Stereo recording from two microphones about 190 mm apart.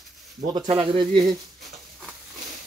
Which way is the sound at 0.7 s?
25° right (ahead or behind).